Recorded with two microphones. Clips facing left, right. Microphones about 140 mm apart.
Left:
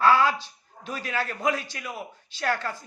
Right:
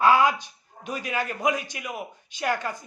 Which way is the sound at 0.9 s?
15° right (ahead or behind).